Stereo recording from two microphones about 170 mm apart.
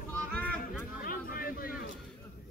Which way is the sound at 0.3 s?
10° left (ahead or behind).